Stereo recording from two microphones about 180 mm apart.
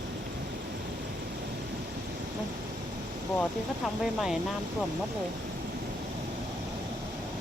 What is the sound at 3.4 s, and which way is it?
Speech, centre (ahead or behind).